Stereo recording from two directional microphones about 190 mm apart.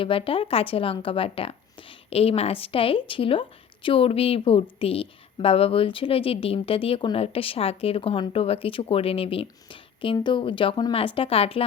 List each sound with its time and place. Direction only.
0.0 s a woman's voice: 30° left (ahead or behind)